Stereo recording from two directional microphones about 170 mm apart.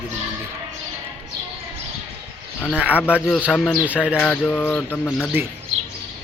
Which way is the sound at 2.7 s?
10° right (ahead or behind).